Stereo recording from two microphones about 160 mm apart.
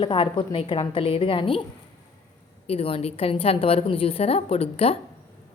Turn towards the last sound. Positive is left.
turn(degrees=40)  # may be behind; listen again after turning